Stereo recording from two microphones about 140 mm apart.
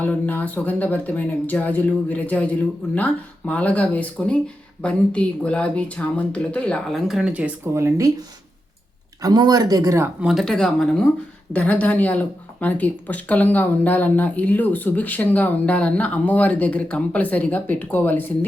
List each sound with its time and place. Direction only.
0.0 s speech: 10° left (ahead or behind); by 8.2 s 20° right (ahead or behind)
9.2 s speech: 30° right (ahead or behind)
10.2 s speech: centre (ahead or behind)